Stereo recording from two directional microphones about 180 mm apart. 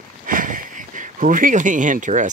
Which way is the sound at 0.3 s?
50° right (ahead or behind).